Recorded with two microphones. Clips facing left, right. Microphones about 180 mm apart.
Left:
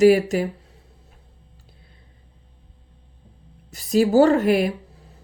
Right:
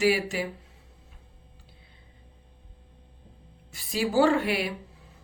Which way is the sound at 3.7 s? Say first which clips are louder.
Left 10 dB; 40° left (ahead or behind).